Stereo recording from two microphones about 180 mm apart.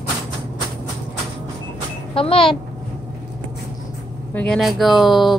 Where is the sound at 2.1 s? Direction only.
30° left (ahead or behind).